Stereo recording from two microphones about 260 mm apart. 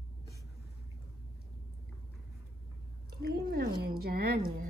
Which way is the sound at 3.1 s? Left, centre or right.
Right.